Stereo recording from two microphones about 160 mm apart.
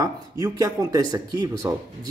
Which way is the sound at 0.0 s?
20° right (ahead or behind).